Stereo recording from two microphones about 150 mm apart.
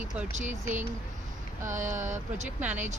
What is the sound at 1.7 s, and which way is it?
Speech, 55° right (ahead or behind).